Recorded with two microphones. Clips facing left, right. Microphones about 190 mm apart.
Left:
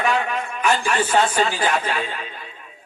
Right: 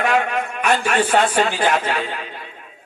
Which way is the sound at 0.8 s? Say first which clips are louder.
Right 2 dB; 65° right (ahead or behind).